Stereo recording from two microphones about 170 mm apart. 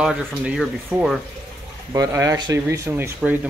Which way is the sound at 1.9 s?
20° right (ahead or behind).